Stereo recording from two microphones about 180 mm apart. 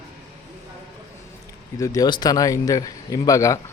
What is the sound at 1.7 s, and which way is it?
A man's voice, 20° left (ahead or behind).